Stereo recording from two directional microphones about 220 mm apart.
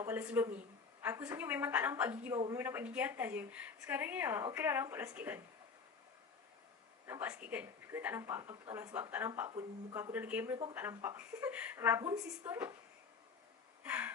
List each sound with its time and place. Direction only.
0.0 s a woman's voice: 5° right (ahead or behind)
7.1 s a woman's voice: 5° right (ahead or behind)
13.8 s gasp: 5° right (ahead or behind)